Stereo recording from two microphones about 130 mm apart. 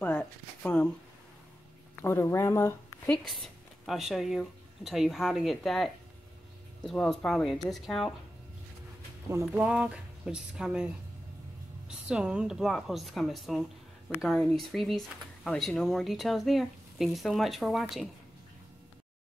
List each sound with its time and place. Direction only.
0.0 s speech: 15° left (ahead or behind)
2.0 s speech: 20° left (ahead or behind)
3.1 s a woman's voice: centre (ahead or behind)
9.5 s speech: 10° right (ahead or behind)
12.1 s a woman's voice: 5° right (ahead or behind)